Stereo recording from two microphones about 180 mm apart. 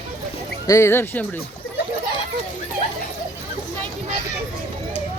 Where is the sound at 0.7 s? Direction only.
15° left (ahead or behind).